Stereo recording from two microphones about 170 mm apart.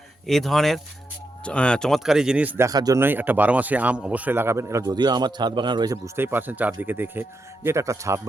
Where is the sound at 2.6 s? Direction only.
20° right (ahead or behind).